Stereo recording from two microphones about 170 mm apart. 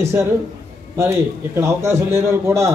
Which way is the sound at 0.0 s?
15° right (ahead or behind).